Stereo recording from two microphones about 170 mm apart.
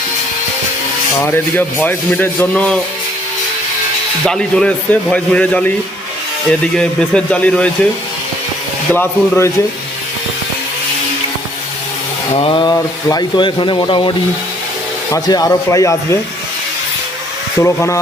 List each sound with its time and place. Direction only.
1.2 s speech: 10° left (ahead or behind)
4.3 s speech: 5° left (ahead or behind)
6.7 s speech: 5° left (ahead or behind)
8.9 s speech: 10° left (ahead or behind)
12.3 s speech: 30° left (ahead or behind)
15.1 s speech: 20° left (ahead or behind)
17.6 s speech: 15° left (ahead or behind)